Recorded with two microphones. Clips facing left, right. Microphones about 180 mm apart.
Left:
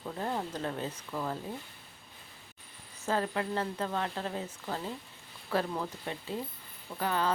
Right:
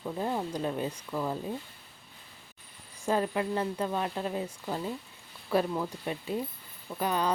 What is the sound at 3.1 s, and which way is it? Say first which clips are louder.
Speech: right 3 dB; 15° right (ahead or behind).